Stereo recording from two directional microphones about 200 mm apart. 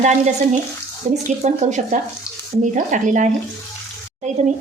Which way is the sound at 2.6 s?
40° right (ahead or behind).